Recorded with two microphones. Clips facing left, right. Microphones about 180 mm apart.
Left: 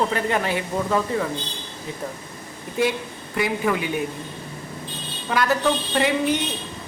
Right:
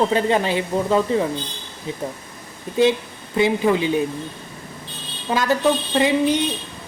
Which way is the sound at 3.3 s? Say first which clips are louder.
Right 5 dB; 25° right (ahead or behind).